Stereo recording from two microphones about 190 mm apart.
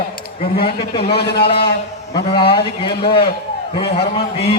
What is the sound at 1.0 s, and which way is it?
Speech, 60° left (ahead or behind).